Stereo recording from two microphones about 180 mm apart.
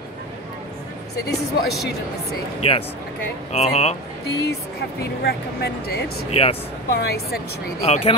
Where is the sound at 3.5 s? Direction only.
35° left (ahead or behind).